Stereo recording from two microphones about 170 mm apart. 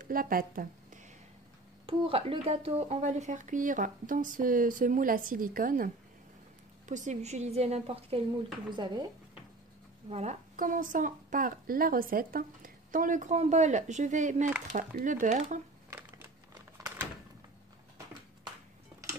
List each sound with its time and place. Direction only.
0.0 s a woman's voice: 55° right (ahead or behind)
1.9 s a woman's voice: 35° right (ahead or behind); by 5.9 s 55° right (ahead or behind)
6.9 s a woman's voice: 45° right (ahead or behind); by 9.0 s 25° right (ahead or behind)
10.0 s a woman's voice: 40° right (ahead or behind)
16.7 s a sound: 15° right (ahead or behind)